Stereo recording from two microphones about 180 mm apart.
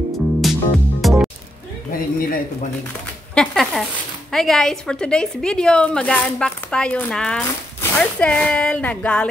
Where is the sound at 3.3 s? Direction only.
Centre (ahead or behind).